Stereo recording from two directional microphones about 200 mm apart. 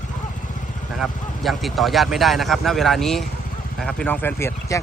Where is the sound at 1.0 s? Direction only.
Centre (ahead or behind).